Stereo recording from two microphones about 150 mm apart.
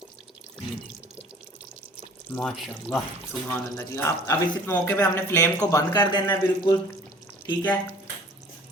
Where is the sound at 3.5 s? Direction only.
15° left (ahead or behind).